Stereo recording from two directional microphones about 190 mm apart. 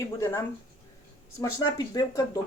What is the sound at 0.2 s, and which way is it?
Speech, 15° left (ahead or behind).